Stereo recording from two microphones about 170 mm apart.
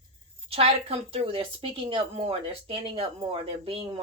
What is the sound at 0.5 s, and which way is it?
Speech, 35° right (ahead or behind).